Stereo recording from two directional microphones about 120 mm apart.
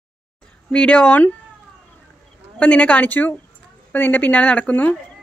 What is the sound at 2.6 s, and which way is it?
A woman's voice, 10° left (ahead or behind).